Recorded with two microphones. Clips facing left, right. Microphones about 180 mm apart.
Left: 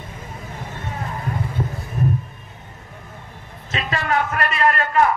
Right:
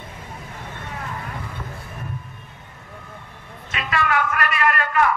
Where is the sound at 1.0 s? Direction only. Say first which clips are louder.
Left 7 dB; 30° left (ahead or behind).